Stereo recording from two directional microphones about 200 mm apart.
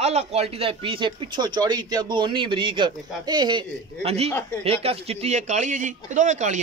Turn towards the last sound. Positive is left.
turn(degrees=-35)  # may be behind; listen again after turning